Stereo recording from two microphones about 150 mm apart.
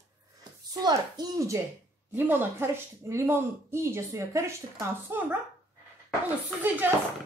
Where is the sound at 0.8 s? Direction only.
25° right (ahead or behind).